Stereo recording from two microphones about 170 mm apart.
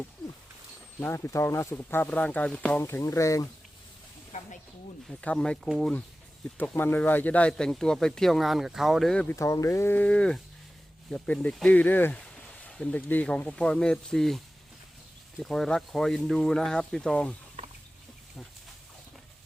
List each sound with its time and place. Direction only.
0.9 s speech: 10° left (ahead or behind)
5.0 s speech: 5° left (ahead or behind)
9.3 s speech: 20° left (ahead or behind); by 14.4 s centre (ahead or behind)
15.4 s speech: centre (ahead or behind)
17.6 s a sound: 35° right (ahead or behind)